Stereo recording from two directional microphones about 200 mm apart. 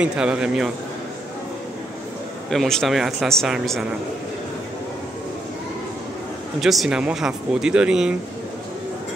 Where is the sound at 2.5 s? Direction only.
Centre (ahead or behind).